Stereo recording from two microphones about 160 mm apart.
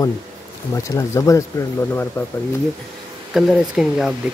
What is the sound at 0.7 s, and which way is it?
Speech, 20° left (ahead or behind).